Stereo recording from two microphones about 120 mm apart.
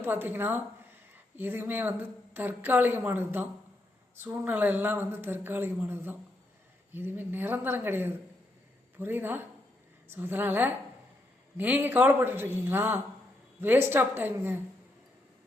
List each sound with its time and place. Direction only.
0.0 s a woman's voice: 15° right (ahead or behind)